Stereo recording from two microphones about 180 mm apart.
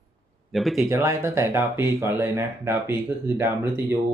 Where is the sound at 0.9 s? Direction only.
15° right (ahead or behind).